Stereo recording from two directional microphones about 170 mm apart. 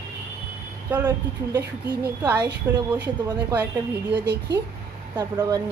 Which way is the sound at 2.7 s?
10° right (ahead or behind).